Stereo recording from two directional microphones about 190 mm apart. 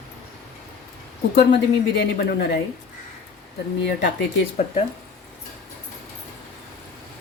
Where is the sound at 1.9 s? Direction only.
55° left (ahead or behind).